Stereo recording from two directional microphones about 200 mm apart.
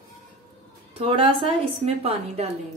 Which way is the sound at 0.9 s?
25° right (ahead or behind).